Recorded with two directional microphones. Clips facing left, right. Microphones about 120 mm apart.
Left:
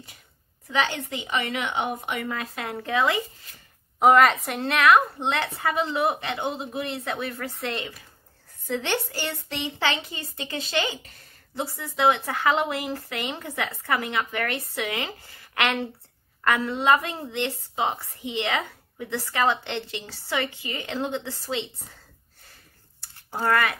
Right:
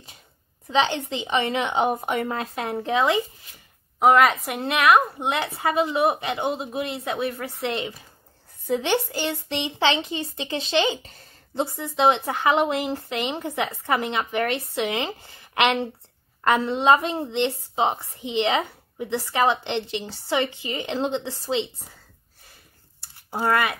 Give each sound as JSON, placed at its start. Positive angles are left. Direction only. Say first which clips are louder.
{"t": 0.7, "sound": "a woman's voice", "louder": "right 4 dB", "side_deg": -25}
{"t": 4.0, "sound": "a woman's voice", "louder": "even", "side_deg": 0}
{"t": 23.1, "sound": "speech", "louder": "right 1 dB", "side_deg": -15}